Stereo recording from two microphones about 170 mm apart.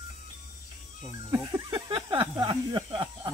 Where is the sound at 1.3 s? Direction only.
20° right (ahead or behind).